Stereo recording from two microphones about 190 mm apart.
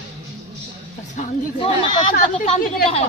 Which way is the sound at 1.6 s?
25° left (ahead or behind).